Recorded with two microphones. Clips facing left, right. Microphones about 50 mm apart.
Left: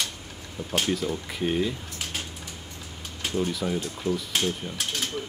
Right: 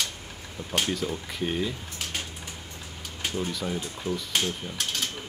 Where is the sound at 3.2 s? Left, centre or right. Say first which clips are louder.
Left 3 dB; centre.